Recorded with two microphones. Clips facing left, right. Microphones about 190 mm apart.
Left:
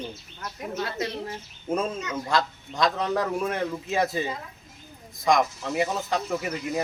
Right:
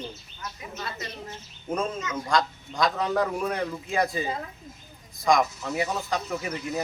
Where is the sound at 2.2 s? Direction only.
Centre (ahead or behind).